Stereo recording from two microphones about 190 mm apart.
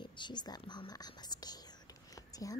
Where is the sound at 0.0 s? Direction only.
25° left (ahead or behind).